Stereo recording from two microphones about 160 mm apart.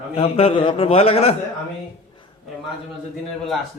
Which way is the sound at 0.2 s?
35° left (ahead or behind).